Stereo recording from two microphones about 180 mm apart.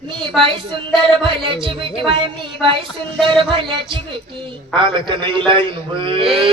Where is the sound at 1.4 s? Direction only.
30° right (ahead or behind).